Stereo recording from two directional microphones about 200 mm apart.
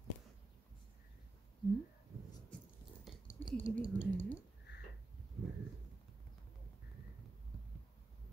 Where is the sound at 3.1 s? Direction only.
Centre (ahead or behind).